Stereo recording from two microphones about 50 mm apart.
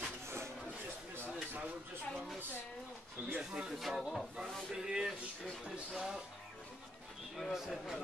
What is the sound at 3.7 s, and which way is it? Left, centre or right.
Speech, centre.